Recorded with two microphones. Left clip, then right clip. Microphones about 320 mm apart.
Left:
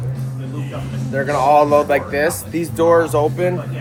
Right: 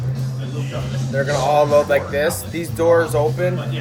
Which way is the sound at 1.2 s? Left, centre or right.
Centre.